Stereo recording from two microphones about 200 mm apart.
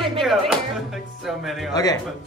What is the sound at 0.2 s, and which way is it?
Speech, centre (ahead or behind).